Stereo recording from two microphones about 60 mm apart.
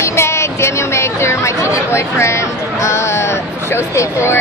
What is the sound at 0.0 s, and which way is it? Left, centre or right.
Chatter, left.